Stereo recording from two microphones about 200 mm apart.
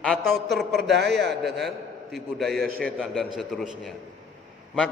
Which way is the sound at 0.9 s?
55° right (ahead or behind).